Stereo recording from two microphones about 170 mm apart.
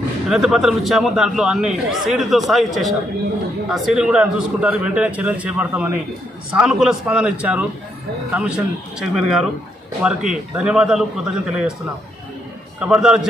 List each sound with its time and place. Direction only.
0.3 s a man's voice: centre (ahead or behind)
12.8 s a man's voice: 5° right (ahead or behind)